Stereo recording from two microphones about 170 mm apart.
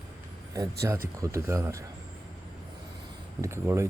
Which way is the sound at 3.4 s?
15° right (ahead or behind).